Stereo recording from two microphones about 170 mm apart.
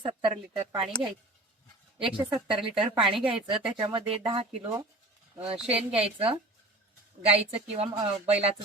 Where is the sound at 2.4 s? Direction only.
30° right (ahead or behind).